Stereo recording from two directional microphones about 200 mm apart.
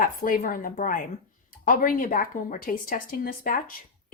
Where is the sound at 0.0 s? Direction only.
45° left (ahead or behind).